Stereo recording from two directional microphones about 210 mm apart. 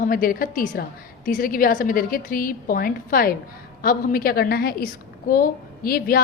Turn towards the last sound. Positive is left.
turn(degrees=45)  # may be behind; listen again after turning